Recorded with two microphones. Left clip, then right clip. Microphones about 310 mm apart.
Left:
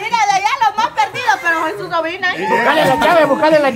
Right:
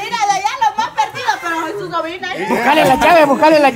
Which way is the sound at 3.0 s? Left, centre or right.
Right.